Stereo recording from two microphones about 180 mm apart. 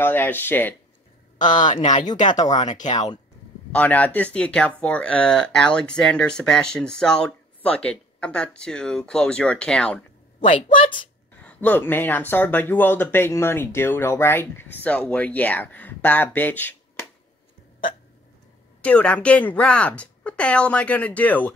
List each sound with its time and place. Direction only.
0.0 s speech: 10° left (ahead or behind)
1.4 s speech: 45° left (ahead or behind)
3.7 s speech: 10° left (ahead or behind)
11.4 s speech: 10° left (ahead or behind)
18.8 s speech: 5° left (ahead or behind)